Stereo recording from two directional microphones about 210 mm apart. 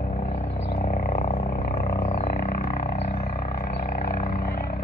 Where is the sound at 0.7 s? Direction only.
40° left (ahead or behind).